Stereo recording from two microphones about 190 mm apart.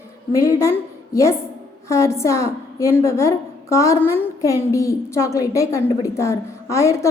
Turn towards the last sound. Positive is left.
turn(degrees=15)  # may be behind; listen again after turning